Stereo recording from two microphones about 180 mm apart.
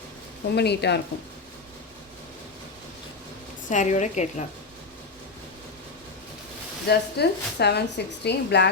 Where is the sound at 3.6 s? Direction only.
40° left (ahead or behind).